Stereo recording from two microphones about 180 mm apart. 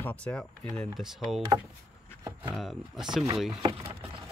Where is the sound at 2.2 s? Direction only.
20° right (ahead or behind).